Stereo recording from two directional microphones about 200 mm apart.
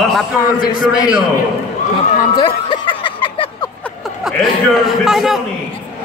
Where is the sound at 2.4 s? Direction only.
25° left (ahead or behind).